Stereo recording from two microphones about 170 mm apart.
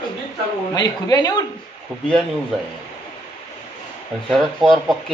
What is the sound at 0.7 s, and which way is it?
Speech, 25° left (ahead or behind).